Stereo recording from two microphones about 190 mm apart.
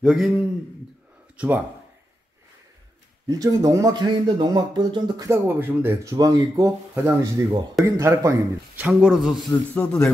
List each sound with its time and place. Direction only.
0.0 s speech: centre (ahead or behind)
3.3 s speech: 20° right (ahead or behind)
8.8 s speech: 5° right (ahead or behind)